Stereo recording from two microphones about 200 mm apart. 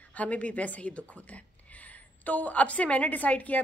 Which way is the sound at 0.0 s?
5° left (ahead or behind).